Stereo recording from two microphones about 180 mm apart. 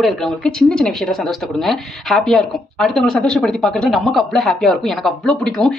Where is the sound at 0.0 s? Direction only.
Centre (ahead or behind).